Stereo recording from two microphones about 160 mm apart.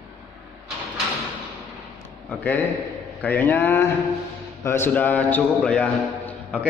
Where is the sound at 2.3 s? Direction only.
10° left (ahead or behind).